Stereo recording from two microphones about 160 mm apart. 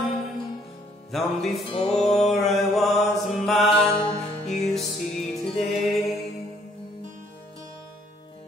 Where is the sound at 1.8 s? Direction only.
40° left (ahead or behind).